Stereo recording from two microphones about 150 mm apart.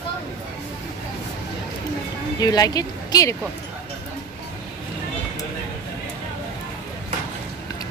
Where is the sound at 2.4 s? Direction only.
25° left (ahead or behind).